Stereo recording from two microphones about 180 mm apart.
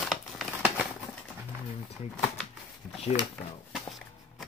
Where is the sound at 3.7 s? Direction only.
Centre (ahead or behind).